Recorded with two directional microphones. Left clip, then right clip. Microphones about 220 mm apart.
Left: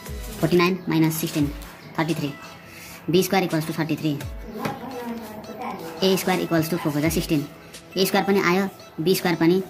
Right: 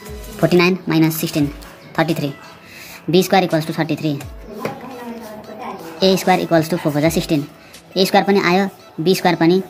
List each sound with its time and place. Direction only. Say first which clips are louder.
0.4 s speech: right 6 dB; 20° right (ahead or behind)
5.9 s speech: right 7 dB; 15° right (ahead or behind)